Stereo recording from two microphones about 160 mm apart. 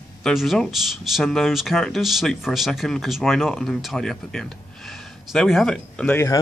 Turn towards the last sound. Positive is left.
turn(degrees=5)  # may be behind; listen again after turning